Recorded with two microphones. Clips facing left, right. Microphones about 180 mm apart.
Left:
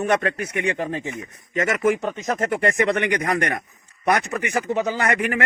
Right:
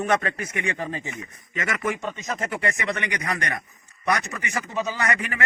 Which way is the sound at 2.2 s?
55° left (ahead or behind).